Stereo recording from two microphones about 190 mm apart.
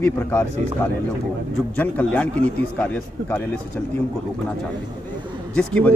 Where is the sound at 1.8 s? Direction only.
10° left (ahead or behind).